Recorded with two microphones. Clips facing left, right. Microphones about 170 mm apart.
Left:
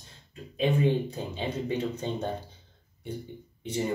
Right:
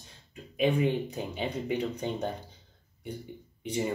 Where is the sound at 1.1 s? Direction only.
15° right (ahead or behind).